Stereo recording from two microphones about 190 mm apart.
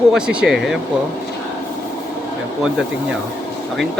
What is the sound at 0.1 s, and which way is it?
Speech, 5° right (ahead or behind).